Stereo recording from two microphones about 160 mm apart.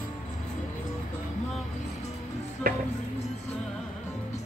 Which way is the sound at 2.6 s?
65° right (ahead or behind).